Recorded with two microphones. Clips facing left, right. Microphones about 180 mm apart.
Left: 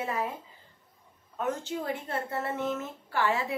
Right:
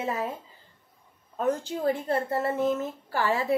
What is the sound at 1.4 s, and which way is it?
A woman's voice, 35° right (ahead or behind).